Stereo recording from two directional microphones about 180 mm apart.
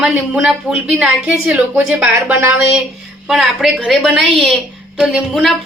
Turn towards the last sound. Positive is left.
turn(degrees=0)  # may be behind; listen again after turning